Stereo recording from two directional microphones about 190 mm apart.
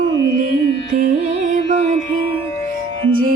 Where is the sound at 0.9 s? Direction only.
40° right (ahead or behind).